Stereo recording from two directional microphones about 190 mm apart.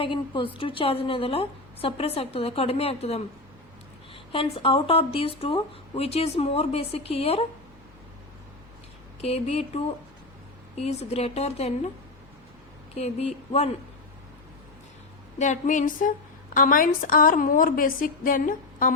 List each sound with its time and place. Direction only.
0.0 s a woman's voice: 25° left (ahead or behind)
9.2 s speech: 30° left (ahead or behind)
12.9 s speech: 35° left (ahead or behind)
15.4 s a woman's voice: 40° left (ahead or behind)